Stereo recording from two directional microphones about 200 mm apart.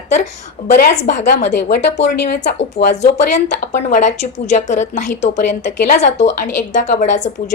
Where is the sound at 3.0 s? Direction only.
35° left (ahead or behind).